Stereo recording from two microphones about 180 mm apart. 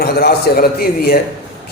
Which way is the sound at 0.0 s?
60° left (ahead or behind).